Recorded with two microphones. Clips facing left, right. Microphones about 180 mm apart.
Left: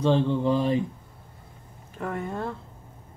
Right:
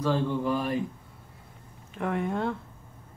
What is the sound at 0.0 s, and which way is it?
Speech, 20° left (ahead or behind).